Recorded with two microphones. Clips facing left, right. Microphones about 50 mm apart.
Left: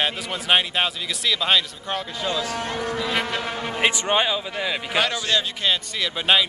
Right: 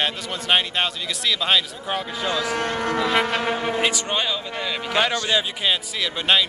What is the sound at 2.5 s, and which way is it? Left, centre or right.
Speech, right.